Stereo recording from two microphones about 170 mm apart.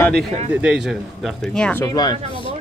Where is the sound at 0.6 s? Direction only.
5° right (ahead or behind).